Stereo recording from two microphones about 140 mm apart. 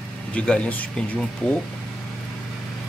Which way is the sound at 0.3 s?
10° left (ahead or behind).